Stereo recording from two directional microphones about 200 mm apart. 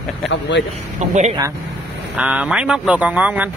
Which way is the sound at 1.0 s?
35° right (ahead or behind).